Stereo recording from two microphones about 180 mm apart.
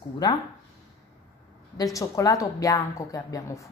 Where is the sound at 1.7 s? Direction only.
20° left (ahead or behind).